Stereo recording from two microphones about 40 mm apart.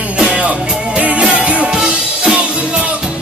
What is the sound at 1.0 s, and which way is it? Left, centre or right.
Music, right.